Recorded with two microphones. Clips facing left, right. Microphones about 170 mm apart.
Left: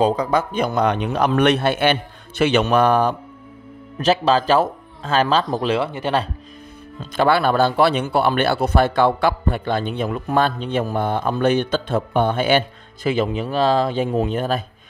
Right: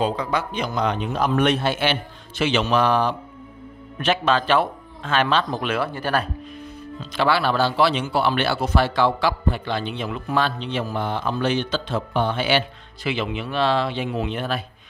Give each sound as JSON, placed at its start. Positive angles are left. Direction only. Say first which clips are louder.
{"t": 0.0, "sound": "speech", "louder": "left 5 dB", "side_deg": 40}
{"t": 4.0, "sound": "speech", "louder": "left 4 dB", "side_deg": 35}
{"t": 5.8, "sound": "speech", "louder": "left 2 dB", "side_deg": 20}
{"t": 7.0, "sound": "speech", "louder": "left 4 dB", "side_deg": 50}